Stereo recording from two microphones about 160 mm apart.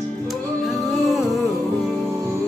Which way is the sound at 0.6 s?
Centre (ahead or behind).